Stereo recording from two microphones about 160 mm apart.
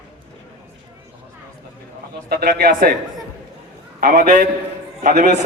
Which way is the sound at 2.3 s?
70° right (ahead or behind).